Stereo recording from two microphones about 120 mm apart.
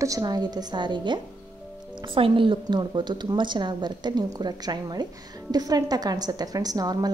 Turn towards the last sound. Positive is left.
turn(degrees=-30)  # may be behind; listen again after turning